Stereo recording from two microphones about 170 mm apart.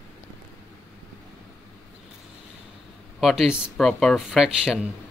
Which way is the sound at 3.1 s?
Centre (ahead or behind).